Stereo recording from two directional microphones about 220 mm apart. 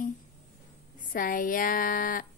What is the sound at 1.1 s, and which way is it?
Speech, 40° left (ahead or behind).